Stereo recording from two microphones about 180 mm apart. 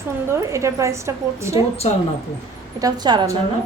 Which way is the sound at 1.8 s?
35° left (ahead or behind).